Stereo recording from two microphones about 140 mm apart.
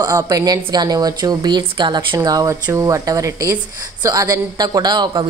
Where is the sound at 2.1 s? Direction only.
25° right (ahead or behind).